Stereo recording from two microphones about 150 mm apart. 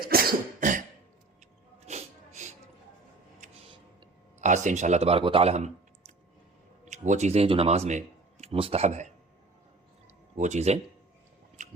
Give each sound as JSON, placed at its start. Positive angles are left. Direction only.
{"t": 0.0, "sound": "cough", "side_deg": -80}
{"t": 1.9, "sound": "sneeze", "side_deg": -50}
{"t": 4.4, "sound": "speech", "side_deg": -55}
{"t": 6.8, "sound": "speech", "side_deg": -55}
{"t": 10.3, "sound": "speech", "side_deg": -50}